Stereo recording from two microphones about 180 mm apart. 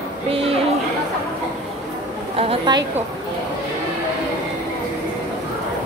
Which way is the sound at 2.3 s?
25° right (ahead or behind).